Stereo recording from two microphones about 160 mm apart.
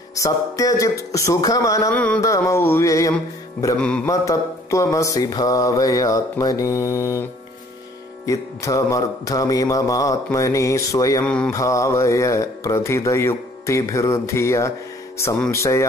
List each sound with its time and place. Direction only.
0.1 s mantra: 20° left (ahead or behind)
8.3 s mantra: 20° left (ahead or behind)
11.2 s mantra: 5° left (ahead or behind)
11.5 s mantra: 20° left (ahead or behind)